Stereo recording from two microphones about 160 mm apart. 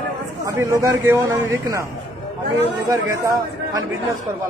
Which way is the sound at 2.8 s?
20° right (ahead or behind).